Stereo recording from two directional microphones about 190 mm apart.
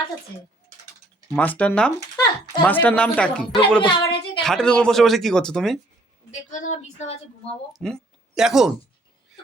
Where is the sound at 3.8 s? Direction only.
25° left (ahead or behind).